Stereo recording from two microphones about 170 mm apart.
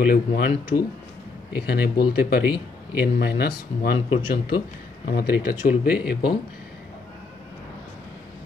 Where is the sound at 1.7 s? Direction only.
70° left (ahead or behind).